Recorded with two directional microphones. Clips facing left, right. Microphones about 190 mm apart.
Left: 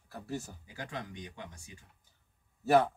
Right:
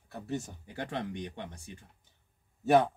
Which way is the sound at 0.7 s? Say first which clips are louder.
Right 6 dB; 30° right (ahead or behind).